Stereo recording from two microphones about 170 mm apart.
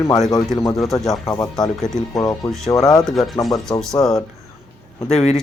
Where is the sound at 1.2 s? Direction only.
20° left (ahead or behind).